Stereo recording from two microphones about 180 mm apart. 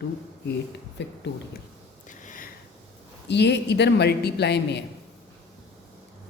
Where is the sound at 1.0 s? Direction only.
80° left.